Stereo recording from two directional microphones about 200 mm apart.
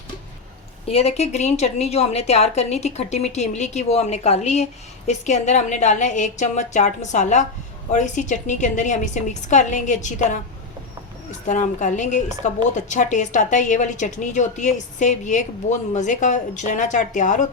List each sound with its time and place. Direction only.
0.9 s speech: 30° left (ahead or behind)